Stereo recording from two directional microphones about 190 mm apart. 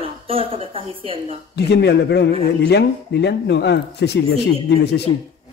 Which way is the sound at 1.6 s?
60° left (ahead or behind).